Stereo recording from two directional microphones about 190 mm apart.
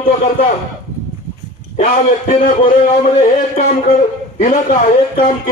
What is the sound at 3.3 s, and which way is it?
Speech, 45° left (ahead or behind).